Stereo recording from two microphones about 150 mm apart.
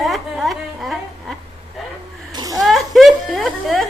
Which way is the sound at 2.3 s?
25° right (ahead or behind).